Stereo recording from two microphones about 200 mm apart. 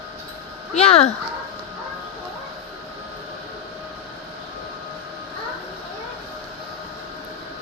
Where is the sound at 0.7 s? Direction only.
30° left (ahead or behind).